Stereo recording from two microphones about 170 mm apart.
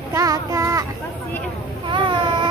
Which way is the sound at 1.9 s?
30° right (ahead or behind).